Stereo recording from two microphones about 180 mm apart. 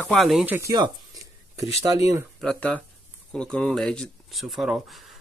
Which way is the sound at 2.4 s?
5° left (ahead or behind).